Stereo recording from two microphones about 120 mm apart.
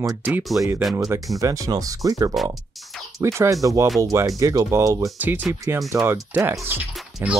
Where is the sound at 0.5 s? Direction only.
15° right (ahead or behind).